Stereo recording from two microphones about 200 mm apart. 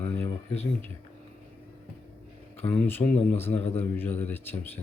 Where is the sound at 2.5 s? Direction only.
10° left (ahead or behind).